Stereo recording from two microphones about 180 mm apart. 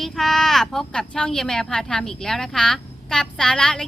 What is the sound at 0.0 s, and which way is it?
Speech, centre (ahead or behind).